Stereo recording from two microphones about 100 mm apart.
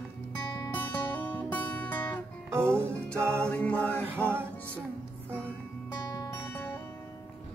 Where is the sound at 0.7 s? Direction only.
15° left (ahead or behind).